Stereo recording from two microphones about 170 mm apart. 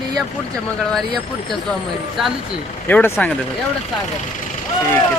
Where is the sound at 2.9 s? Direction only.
10° left (ahead or behind).